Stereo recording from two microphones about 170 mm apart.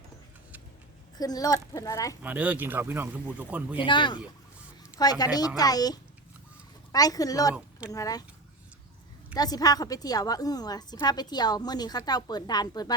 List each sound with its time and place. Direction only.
1.2 s a woman's voice: 20° left (ahead or behind)
2.2 s speech: 10° right (ahead or behind)
3.8 s a woman's voice: 30° left (ahead or behind)
7.5 s speech: 5° right (ahead or behind)
7.9 s a woman's voice: 20° left (ahead or behind)
9.3 s a woman's voice: 20° left (ahead or behind)